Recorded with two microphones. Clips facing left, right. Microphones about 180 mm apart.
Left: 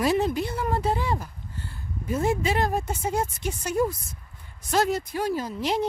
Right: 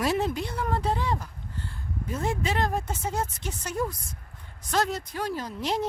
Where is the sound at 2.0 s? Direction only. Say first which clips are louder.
Left 5 dB; 10° left (ahead or behind).